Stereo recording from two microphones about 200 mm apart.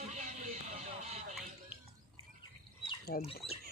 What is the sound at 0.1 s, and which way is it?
Music, 35° right (ahead or behind).